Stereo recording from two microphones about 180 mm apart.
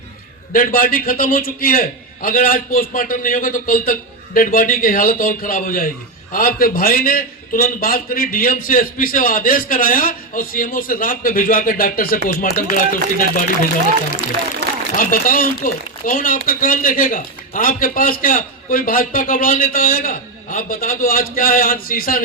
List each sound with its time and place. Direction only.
0.5 s a man's voice: 50° left (ahead or behind)
14.9 s a man's voice: 50° left (ahead or behind)